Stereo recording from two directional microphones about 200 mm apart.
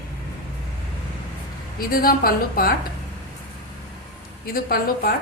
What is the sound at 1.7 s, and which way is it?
A woman's voice, 45° left (ahead or behind).